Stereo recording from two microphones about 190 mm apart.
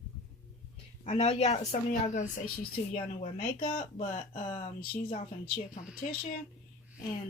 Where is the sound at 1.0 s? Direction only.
30° left (ahead or behind).